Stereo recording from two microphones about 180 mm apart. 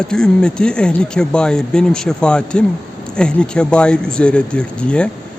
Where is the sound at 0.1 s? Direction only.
5° left (ahead or behind).